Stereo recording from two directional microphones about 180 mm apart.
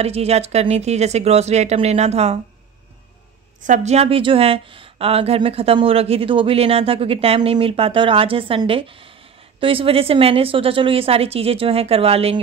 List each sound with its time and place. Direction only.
0.0 s a woman's voice: 35° right (ahead or behind)
3.6 s a woman's voice: 40° right (ahead or behind)